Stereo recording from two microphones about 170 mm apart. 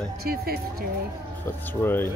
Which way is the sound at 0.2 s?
65° right (ahead or behind).